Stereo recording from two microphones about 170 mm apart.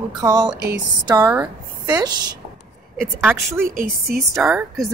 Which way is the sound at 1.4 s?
25° right (ahead or behind).